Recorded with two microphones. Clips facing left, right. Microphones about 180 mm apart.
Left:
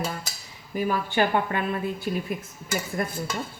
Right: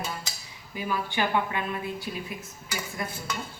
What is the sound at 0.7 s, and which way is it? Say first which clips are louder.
Speech: left 5 dB; 45° left (ahead or behind).